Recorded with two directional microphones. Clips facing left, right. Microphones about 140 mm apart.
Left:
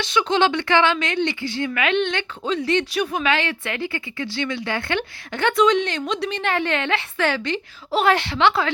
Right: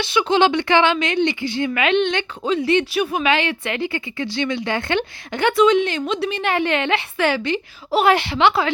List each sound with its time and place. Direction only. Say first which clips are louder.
0.0 s speech: right 2 dB; 10° right (ahead or behind)